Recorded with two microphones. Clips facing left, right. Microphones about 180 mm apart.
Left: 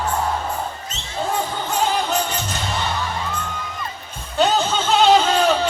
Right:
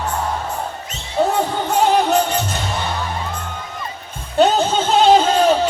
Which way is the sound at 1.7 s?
65° right (ahead or behind).